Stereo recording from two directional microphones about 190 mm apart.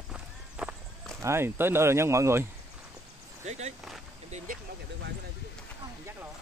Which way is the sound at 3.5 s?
35° right (ahead or behind).